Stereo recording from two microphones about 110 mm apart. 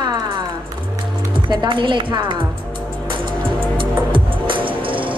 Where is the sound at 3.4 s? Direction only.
50° right (ahead or behind).